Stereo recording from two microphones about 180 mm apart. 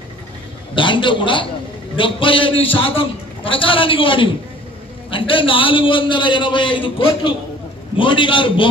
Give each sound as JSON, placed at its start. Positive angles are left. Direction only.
{"t": 0.7, "sound": "a man's voice", "side_deg": 25}